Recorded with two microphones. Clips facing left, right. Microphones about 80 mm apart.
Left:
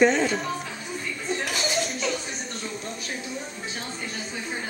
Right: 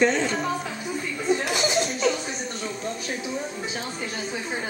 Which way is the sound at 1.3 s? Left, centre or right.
Centre.